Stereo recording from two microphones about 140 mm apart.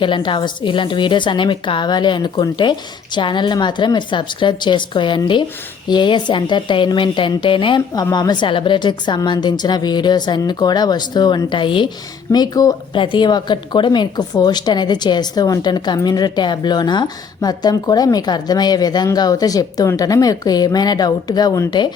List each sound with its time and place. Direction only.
0.0 s a woman's voice: 35° left (ahead or behind)